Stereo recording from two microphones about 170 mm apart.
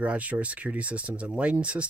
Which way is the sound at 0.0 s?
5° right (ahead or behind).